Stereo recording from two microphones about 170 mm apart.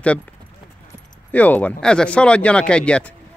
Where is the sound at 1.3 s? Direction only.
10° left (ahead or behind).